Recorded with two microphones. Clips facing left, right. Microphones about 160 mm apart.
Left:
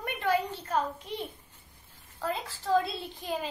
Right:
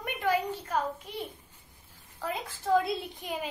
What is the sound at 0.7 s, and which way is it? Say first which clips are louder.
Speech: left 2 dB; 10° right (ahead or behind).